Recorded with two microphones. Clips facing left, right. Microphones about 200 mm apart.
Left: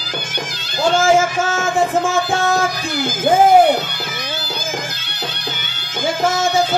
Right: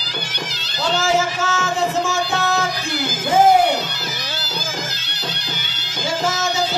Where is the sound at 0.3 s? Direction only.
50° left (ahead or behind).